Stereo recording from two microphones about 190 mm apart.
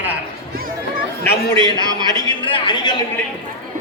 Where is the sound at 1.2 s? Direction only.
15° left (ahead or behind).